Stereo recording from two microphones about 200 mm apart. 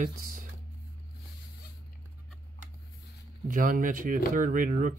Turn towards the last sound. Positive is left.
turn(degrees=-40)  # may be behind; listen again after turning